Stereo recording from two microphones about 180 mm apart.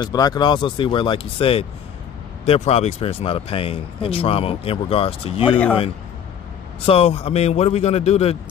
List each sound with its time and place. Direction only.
0.0 s speech: 20° left (ahead or behind)
6.9 s speech: 35° left (ahead or behind)